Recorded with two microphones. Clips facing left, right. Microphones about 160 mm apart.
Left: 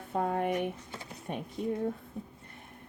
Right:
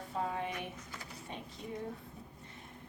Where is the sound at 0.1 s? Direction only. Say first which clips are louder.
Left 8 dB; 55° left (ahead or behind).